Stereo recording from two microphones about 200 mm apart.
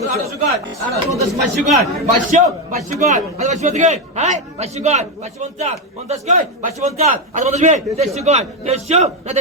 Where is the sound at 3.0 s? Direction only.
35° right (ahead or behind).